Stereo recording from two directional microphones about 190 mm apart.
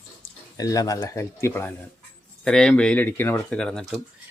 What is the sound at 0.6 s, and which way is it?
Speech, 20° left (ahead or behind).